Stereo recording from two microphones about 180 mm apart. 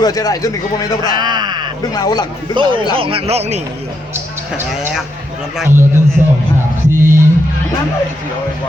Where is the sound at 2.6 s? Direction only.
25° right (ahead or behind).